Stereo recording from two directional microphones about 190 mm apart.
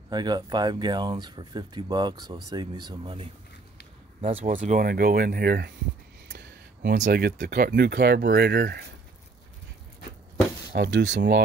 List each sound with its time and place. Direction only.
0.1 s speech: 20° right (ahead or behind)
4.5 s speech: 45° right (ahead or behind)
6.2 s speech: 65° right (ahead or behind)
10.7 s speech: 60° right (ahead or behind)